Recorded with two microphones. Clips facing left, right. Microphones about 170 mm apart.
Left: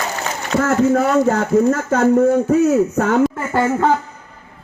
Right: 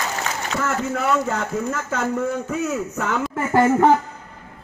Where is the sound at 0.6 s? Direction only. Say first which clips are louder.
Left 10 dB; 45° left (ahead or behind).